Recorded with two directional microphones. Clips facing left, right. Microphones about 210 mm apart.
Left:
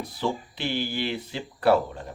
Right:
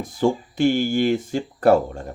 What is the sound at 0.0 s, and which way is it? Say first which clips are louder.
Speech: right 8 dB; 45° right (ahead or behind).